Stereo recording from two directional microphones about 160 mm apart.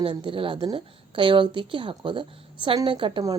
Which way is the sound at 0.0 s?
30° right (ahead or behind).